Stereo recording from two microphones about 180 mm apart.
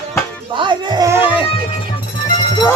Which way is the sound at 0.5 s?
25° right (ahead or behind).